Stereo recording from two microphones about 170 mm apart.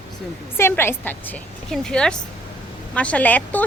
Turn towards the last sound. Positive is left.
turn(degrees=10)  # may be behind; listen again after turning